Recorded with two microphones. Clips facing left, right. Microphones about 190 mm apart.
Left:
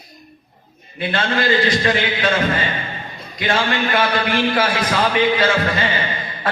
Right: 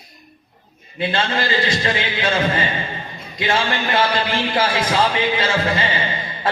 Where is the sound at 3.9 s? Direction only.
25° right (ahead or behind).